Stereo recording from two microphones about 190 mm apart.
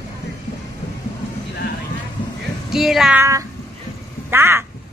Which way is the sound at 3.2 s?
15° right (ahead or behind).